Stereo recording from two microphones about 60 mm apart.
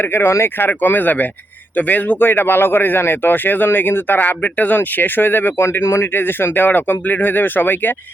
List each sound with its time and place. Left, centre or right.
0.1 s speech: left
0.6 s speech: left